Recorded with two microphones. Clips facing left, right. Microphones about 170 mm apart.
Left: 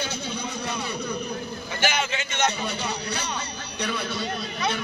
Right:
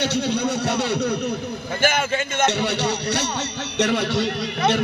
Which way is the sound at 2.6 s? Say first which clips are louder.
Right 7 dB; 75° right (ahead or behind).